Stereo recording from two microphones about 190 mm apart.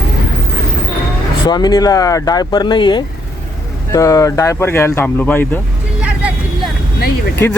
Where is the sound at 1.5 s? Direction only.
20° left (ahead or behind).